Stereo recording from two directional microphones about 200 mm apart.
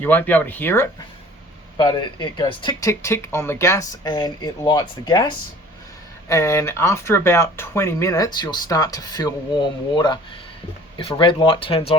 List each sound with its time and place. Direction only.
0.0 s speech: 10° left (ahead or behind)
1.8 s speech: 25° left (ahead or behind)
2.9 s speech: 15° left (ahead or behind); by 11.9 s 30° left (ahead or behind)